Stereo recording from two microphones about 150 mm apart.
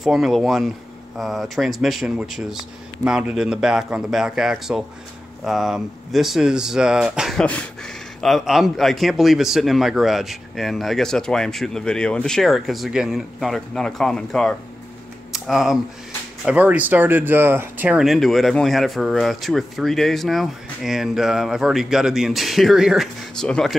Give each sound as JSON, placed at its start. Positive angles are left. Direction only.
{"t": 0.0, "sound": "speech", "side_deg": 0}